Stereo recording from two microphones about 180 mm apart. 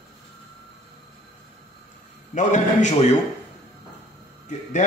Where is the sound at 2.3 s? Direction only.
40° left (ahead or behind).